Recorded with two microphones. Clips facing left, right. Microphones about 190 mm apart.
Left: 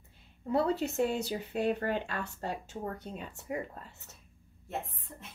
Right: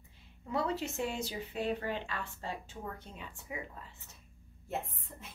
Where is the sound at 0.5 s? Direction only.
35° left (ahead or behind).